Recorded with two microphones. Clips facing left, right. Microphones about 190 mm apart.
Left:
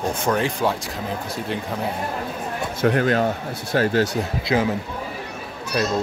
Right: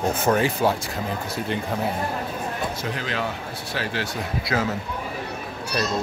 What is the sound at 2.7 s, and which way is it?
Speech, 55° left (ahead or behind).